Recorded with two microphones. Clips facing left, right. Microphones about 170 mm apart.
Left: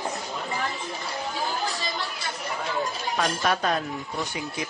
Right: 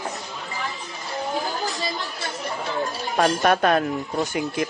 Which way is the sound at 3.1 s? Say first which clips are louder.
Right 7 dB; 45° right (ahead or behind).